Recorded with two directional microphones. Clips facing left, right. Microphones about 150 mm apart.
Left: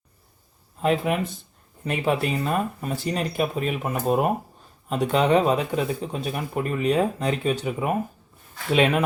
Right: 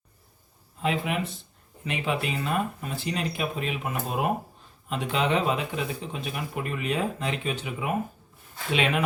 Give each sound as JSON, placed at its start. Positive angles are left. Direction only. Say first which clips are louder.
{"t": 0.8, "sound": "speech", "louder": "left 5 dB", "side_deg": 45}